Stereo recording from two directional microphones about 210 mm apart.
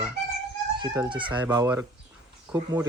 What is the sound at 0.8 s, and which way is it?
Speech, 20° right (ahead or behind).